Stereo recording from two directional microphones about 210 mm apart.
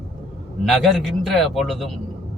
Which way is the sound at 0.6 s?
Centre (ahead or behind).